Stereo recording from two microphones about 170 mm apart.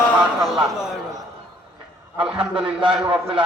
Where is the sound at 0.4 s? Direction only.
5° right (ahead or behind).